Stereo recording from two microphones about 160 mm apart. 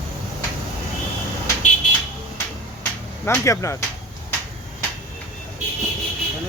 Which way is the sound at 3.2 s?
15° left (ahead or behind).